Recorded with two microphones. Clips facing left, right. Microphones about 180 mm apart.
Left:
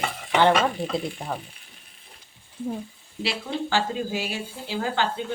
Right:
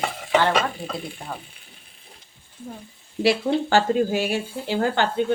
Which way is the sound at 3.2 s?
50° right (ahead or behind).